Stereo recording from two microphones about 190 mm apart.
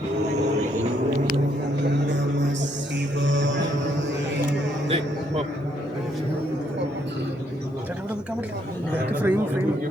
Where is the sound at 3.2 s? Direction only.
70° right (ahead or behind).